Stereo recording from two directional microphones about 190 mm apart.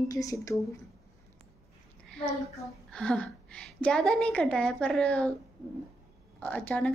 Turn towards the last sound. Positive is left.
turn(degrees=10)  # may be behind; listen again after turning